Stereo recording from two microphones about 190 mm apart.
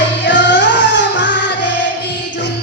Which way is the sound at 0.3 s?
70° left (ahead or behind).